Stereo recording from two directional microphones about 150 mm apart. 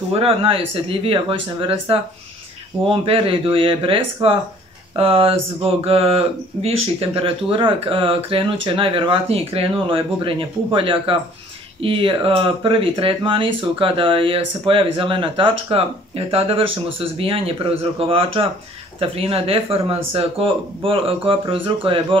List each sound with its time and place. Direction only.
0.1 s speech: 40° right (ahead or behind)